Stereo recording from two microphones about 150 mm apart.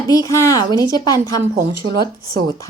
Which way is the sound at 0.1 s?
20° left (ahead or behind).